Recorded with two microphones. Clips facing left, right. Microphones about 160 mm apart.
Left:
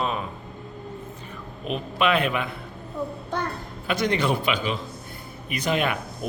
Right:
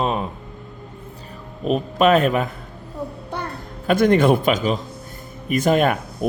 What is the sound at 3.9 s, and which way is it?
Speech, 50° right (ahead or behind).